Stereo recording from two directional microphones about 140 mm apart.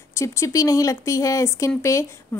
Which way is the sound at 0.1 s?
20° left (ahead or behind).